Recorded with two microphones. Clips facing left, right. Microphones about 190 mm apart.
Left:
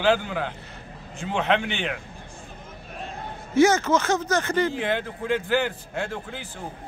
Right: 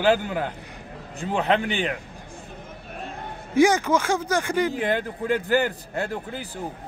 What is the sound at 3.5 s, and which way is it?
Speech, 15° right (ahead or behind).